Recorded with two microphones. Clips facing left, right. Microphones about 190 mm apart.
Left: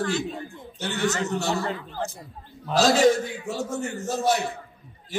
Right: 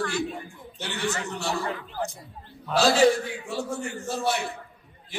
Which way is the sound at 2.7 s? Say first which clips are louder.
Left 1 dB; 40° left (ahead or behind).